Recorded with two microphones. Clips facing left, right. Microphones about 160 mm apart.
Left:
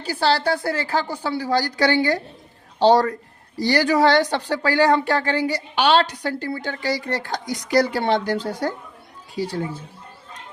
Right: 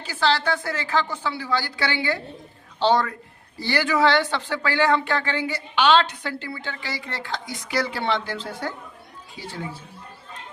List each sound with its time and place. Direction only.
0.0 s a woman's voice: 35° left (ahead or behind)